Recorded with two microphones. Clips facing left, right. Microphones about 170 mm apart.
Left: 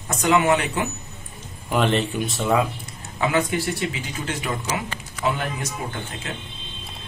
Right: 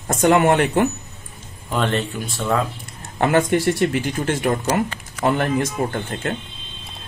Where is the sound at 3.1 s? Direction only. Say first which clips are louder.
Right 5 dB; 50° right (ahead or behind).